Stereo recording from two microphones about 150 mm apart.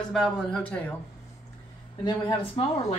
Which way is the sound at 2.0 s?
25° left (ahead or behind).